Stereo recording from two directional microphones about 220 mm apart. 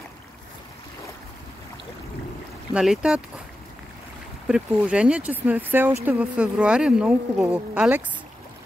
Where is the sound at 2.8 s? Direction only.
5° right (ahead or behind).